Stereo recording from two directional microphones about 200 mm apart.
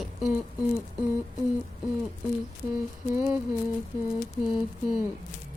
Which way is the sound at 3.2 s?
10° right (ahead or behind).